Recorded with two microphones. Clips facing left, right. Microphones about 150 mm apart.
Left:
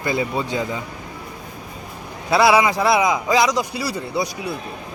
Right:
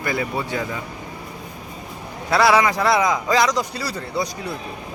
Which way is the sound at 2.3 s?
15° left (ahead or behind).